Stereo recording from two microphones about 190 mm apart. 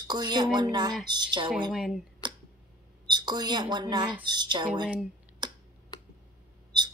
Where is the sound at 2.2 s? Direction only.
25° right (ahead or behind).